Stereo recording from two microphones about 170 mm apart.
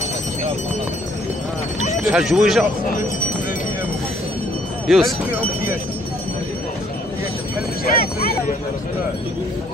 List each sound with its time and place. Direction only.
2.0 s speech: 5° right (ahead or behind)
4.8 s speech: centre (ahead or behind)
7.8 s speech: 60° left (ahead or behind)